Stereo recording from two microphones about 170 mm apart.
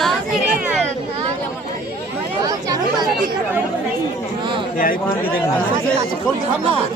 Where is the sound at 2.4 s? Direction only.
20° right (ahead or behind).